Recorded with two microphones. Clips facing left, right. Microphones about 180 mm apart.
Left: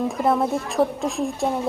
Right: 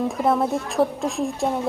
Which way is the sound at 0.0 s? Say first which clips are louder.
Even; centre (ahead or behind).